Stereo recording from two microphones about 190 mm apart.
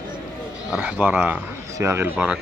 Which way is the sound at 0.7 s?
10° right (ahead or behind).